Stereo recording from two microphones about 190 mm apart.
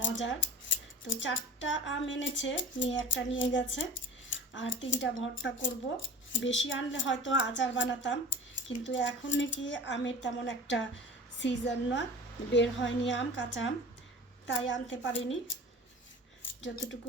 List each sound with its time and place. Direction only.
0.0 s scissors: 75° left (ahead or behind)
1.0 s a woman's voice: 90° left